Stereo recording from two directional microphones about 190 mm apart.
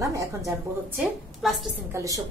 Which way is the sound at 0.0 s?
15° right (ahead or behind).